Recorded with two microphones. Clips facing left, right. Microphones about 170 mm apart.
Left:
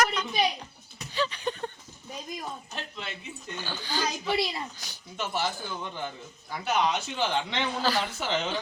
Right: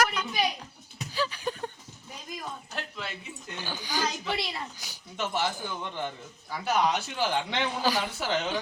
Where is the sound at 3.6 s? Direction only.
15° right (ahead or behind).